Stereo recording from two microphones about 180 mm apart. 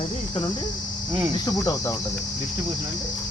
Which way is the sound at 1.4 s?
20° left (ahead or behind).